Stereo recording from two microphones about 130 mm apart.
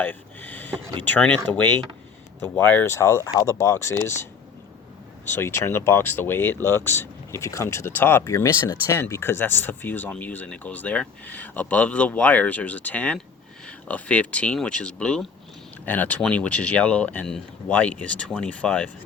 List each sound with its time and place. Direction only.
0.0 s a sound: 15° left (ahead or behind)
1.0 s speech: 10° left (ahead or behind)
5.3 s speech: 20° left (ahead or behind)